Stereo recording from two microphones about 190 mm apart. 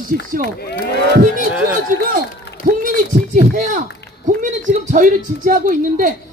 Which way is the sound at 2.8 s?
45° right (ahead or behind).